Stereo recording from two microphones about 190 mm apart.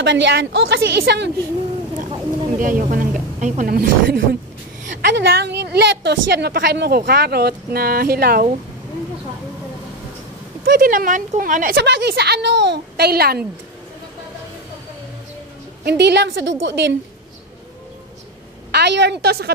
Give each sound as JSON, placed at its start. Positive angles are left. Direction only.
{"t": 0.0, "sound": "a woman's voice", "side_deg": -70}
{"t": 2.6, "sound": "speech", "side_deg": -45}
{"t": 3.7, "sound": "a woman's voice", "side_deg": -55}
{"t": 10.6, "sound": "speech", "side_deg": -50}
{"t": 11.7, "sound": "a woman's voice", "side_deg": -65}
{"t": 15.8, "sound": "a woman's voice", "side_deg": -60}
{"t": 18.7, "sound": "a woman's voice", "side_deg": -65}